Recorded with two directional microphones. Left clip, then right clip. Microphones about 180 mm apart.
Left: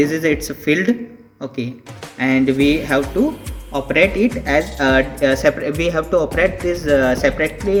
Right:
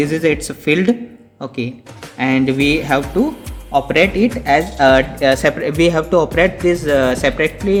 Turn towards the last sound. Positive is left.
turn(degrees=-55)  # may be behind; listen again after turning